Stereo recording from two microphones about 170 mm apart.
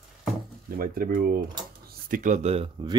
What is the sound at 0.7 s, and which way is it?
Speech, 60° right (ahead or behind).